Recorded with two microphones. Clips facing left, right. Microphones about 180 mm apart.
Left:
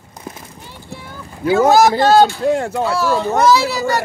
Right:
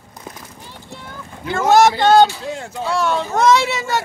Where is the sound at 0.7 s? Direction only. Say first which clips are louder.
Left 3 dB; 10° left (ahead or behind).